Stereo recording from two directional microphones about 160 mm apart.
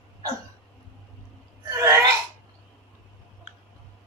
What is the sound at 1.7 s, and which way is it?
Throat clearing, 15° right (ahead or behind).